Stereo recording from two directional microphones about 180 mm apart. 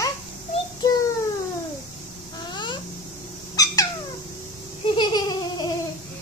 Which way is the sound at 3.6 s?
20° left (ahead or behind).